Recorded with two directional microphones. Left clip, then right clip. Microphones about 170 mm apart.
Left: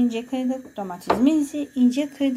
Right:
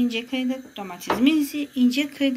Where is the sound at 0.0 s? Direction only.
45° left (ahead or behind).